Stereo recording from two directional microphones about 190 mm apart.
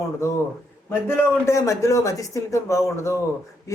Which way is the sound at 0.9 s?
10° left (ahead or behind).